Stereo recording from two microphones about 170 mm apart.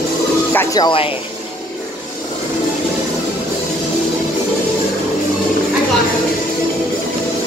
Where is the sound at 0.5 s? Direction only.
25° left (ahead or behind).